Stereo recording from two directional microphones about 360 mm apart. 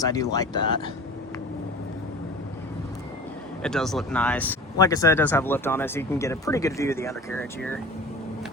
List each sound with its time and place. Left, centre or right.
0.0 s speech: centre
3.6 s speech: centre